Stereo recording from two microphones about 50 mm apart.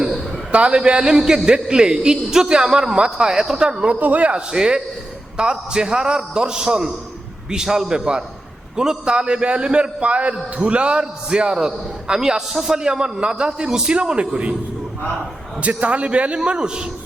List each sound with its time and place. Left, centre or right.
0.5 s a man's voice: right
4.0 s a man's voice: right
4.4 s a man's voice: centre
15.6 s a man's voice: right